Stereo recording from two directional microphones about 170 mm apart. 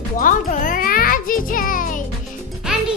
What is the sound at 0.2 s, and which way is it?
Music, 50° left (ahead or behind).